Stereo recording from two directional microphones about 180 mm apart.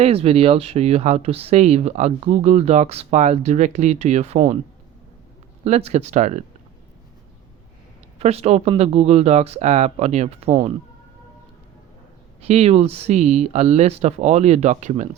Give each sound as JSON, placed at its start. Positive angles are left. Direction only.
{"t": 0.0, "sound": "speech", "side_deg": -35}
{"t": 5.6, "sound": "speech", "side_deg": -40}
{"t": 8.2, "sound": "speech", "side_deg": -35}
{"t": 12.4, "sound": "speech", "side_deg": -35}